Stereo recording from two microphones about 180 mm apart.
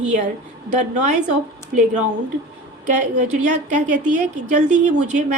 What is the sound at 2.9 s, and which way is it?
A woman's voice, 45° right (ahead or behind).